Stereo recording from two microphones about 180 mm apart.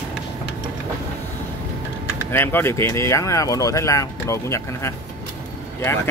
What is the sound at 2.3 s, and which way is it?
Speech, 10° left (ahead or behind).